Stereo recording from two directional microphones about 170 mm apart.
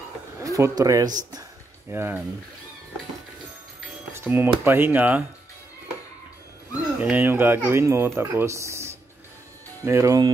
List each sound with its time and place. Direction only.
0.4 s speech: 20° right (ahead or behind)
4.1 s dishes: 15° right (ahead or behind)
4.6 s speech: 10° right (ahead or behind)
7.0 s speech: 10° right (ahead or behind)